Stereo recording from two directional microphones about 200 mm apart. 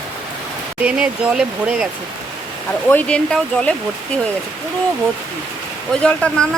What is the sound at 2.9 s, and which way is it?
Speech, 5° left (ahead or behind).